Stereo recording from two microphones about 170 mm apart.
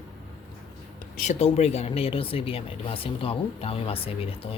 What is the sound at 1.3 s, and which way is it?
A man's voice, 40° left (ahead or behind).